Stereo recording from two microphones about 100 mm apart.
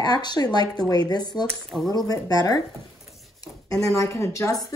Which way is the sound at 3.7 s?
30° left (ahead or behind).